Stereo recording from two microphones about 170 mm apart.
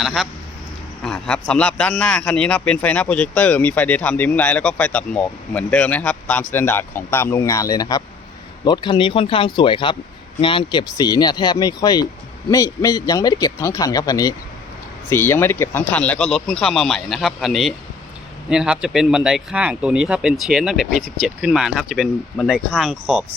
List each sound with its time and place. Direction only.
0.0 s a man's voice: centre (ahead or behind)